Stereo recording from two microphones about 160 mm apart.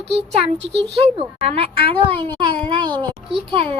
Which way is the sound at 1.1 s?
40° right (ahead or behind).